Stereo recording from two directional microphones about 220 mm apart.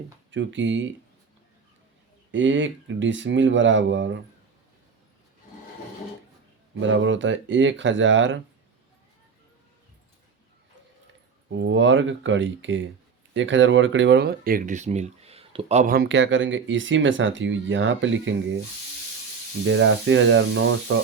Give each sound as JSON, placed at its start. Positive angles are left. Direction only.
{"t": 0.3, "sound": "speech", "side_deg": -55}
{"t": 2.3, "sound": "speech", "side_deg": -60}
{"t": 6.7, "sound": "speech", "side_deg": -60}
{"t": 11.5, "sound": "speech", "side_deg": -55}
{"t": 19.6, "sound": "speech", "side_deg": -60}